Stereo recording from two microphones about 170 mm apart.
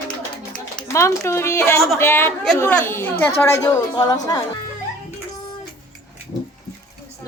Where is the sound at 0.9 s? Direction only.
15° left (ahead or behind).